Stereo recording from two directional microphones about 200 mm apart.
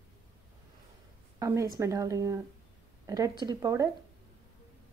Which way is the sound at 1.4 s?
15° right (ahead or behind).